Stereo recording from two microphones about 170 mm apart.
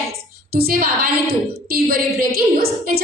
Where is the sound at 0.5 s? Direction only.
60° right (ahead or behind).